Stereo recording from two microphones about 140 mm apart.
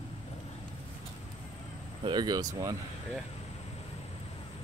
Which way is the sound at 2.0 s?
30° right (ahead or behind).